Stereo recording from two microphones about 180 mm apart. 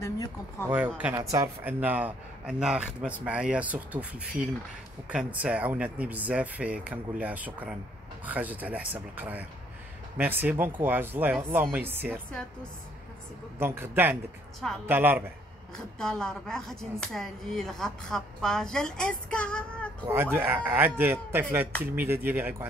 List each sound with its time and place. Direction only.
0.0 s speech: 15° left (ahead or behind)
0.7 s speech: 10° right (ahead or behind)
13.6 s speech: 10° right (ahead or behind)
15.7 s a woman's voice: 5° left (ahead or behind)
20.1 s speech: 10° right (ahead or behind)